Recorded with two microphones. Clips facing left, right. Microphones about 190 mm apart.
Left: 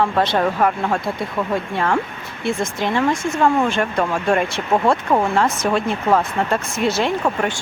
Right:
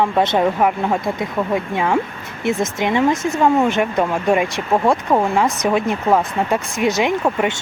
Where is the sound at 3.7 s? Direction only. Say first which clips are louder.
Right 2 dB; 20° right (ahead or behind).